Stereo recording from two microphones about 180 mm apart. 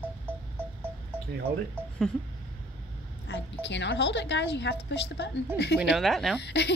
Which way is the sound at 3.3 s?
70° left (ahead or behind).